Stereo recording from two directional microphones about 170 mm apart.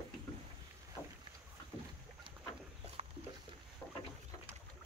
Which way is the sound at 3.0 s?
40° right (ahead or behind).